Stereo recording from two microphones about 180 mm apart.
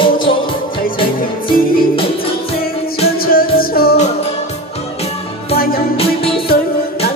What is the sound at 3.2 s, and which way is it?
Music, 55° left (ahead or behind).